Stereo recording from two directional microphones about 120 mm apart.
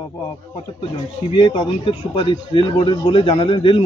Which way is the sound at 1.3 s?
45° left (ahead or behind).